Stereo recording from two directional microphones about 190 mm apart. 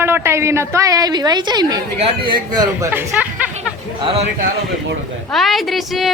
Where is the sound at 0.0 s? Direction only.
15° right (ahead or behind).